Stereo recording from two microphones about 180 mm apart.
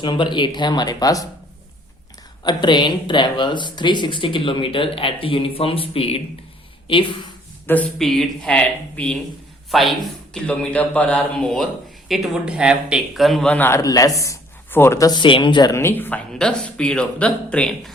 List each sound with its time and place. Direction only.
0.0 s speech: 25° left (ahead or behind)
2.4 s speech: 25° left (ahead or behind)
7.7 s a man's voice: 5° left (ahead or behind)